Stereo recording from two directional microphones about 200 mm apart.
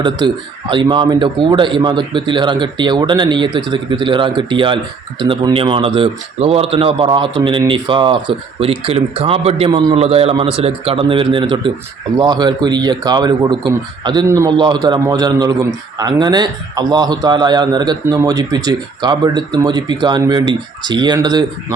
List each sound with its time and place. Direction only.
0.0 s a man's voice: 20° right (ahead or behind)